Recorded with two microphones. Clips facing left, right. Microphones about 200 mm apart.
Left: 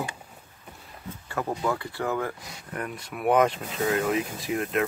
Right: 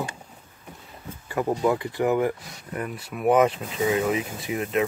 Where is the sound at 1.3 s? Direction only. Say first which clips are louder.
Right 5 dB; 15° right (ahead or behind).